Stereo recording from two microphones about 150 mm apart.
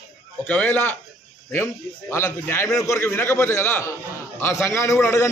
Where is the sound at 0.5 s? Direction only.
10° left (ahead or behind).